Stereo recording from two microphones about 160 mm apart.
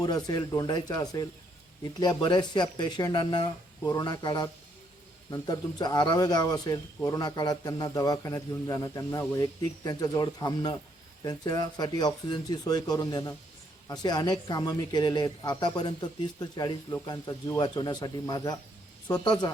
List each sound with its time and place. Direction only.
0.3 s speech: 25° left (ahead or behind)